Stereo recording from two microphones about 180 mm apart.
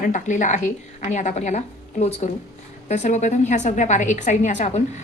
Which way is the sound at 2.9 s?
40° left (ahead or behind).